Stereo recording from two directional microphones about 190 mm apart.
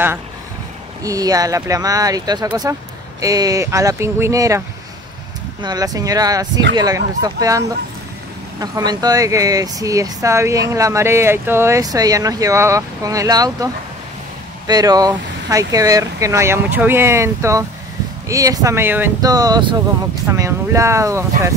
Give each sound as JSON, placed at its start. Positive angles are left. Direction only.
{"t": 1.0, "sound": "speech", "side_deg": -20}
{"t": 14.7, "sound": "speech", "side_deg": -20}